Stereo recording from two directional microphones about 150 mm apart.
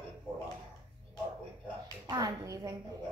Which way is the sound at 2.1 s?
25° right (ahead or behind).